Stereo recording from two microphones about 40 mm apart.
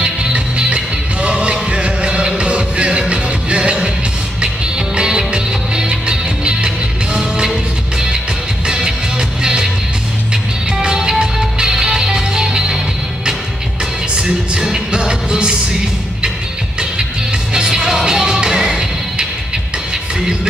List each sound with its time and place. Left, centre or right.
0.0 s music: right
8.6 s music: centre
14.2 s music: centre
17.6 s music: centre